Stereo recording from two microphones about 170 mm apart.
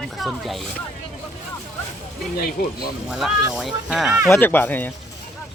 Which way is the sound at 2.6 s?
60° left (ahead or behind).